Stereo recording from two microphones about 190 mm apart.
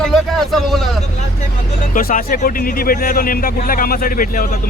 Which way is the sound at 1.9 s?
45° left (ahead or behind).